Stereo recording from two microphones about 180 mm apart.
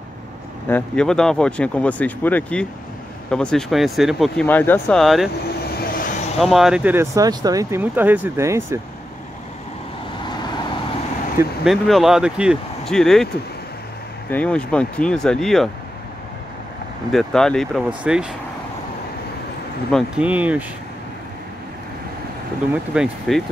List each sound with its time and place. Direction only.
0.7 s speech: 5° left (ahead or behind)
5.6 s vehicle: 60° left (ahead or behind)
6.4 s speech: centre (ahead or behind)
10.2 s vehicle: 25° left (ahead or behind)
11.6 s speech: centre (ahead or behind)
14.3 s speech: 5° left (ahead or behind)
17.1 s speech: centre (ahead or behind)
19.9 s speech: centre (ahead or behind)
20.2 s speech: 10° right (ahead or behind)
22.9 s speech: centre (ahead or behind)